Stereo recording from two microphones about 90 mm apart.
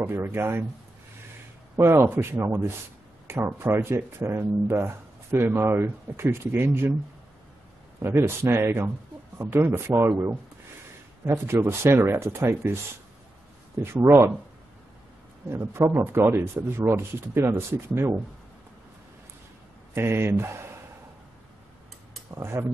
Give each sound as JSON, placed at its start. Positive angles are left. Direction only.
{"t": 0.0, "sound": "speech", "side_deg": -25}
{"t": 1.8, "sound": "speech", "side_deg": -25}
{"t": 8.0, "sound": "speech", "side_deg": -25}
{"t": 13.9, "sound": "speech", "side_deg": -25}
{"t": 15.5, "sound": "speech", "side_deg": -30}
{"t": 19.9, "sound": "speech", "side_deg": -25}
{"t": 22.3, "sound": "speech", "side_deg": -30}